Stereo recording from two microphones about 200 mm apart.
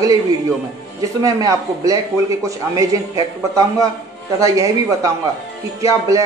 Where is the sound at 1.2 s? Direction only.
15° right (ahead or behind).